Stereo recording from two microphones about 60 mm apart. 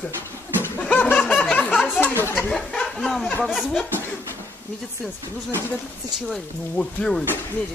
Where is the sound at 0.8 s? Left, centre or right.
Left.